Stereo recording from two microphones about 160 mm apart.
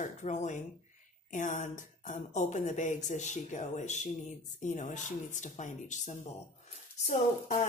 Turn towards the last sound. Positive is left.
turn(degrees=45)  # may be behind; listen again after turning